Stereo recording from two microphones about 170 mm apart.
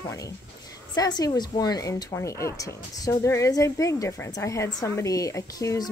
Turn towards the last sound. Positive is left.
turn(degrees=20)  # may be behind; listen again after turning